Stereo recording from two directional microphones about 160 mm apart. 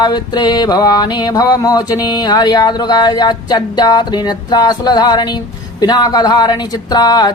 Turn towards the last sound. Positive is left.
turn(degrees=25)  # may be behind; listen again after turning